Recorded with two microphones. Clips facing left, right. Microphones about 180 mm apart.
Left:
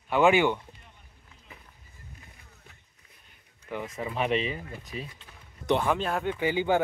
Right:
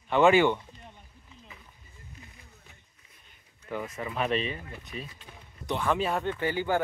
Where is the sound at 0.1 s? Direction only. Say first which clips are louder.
Right 1 dB; 10° left (ahead or behind).